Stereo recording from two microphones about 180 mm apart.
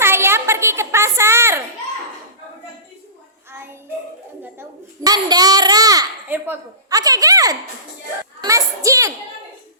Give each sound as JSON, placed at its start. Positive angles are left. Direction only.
{"t": 0.0, "sound": "a sound", "side_deg": -15}
{"t": 5.0, "sound": "child singing", "side_deg": -20}
{"t": 6.2, "sound": "a woman's voice", "side_deg": -10}